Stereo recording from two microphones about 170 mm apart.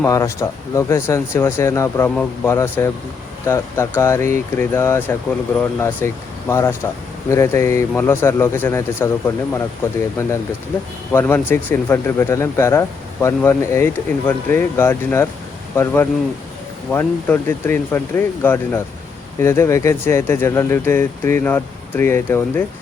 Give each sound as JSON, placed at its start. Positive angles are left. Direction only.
{"t": 0.0, "sound": "speech", "side_deg": 15}